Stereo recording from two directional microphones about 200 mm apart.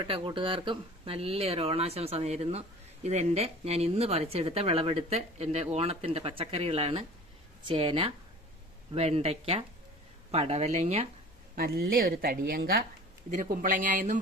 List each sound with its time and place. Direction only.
0.0 s speech: 25° right (ahead or behind)
11.5 s speech: 50° right (ahead or behind)